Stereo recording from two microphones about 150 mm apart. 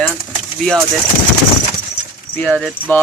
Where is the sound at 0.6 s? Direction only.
5° left (ahead or behind).